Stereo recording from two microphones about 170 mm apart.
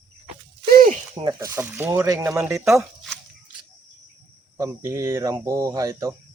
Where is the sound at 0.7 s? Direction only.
55° right (ahead or behind).